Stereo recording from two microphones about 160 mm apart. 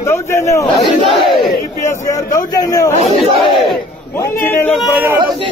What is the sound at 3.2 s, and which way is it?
Battle cry, centre (ahead or behind).